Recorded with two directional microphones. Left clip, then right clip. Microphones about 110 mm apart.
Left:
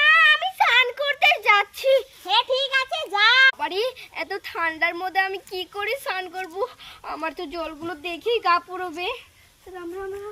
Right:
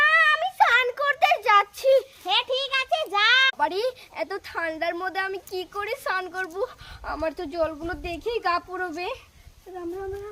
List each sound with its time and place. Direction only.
0.0 s child singing: 30° right (ahead or behind)
3.7 s a woman's voice: 30° right (ahead or behind)